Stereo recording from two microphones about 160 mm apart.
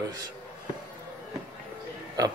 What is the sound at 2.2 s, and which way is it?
Speech, 20° right (ahead or behind).